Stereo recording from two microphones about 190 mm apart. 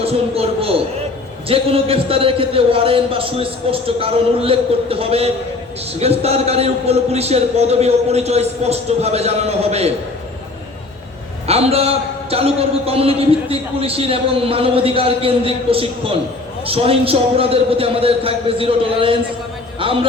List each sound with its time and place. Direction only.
0.0 s a man's voice: 30° right (ahead or behind)
11.4 s a man's voice: 30° right (ahead or behind)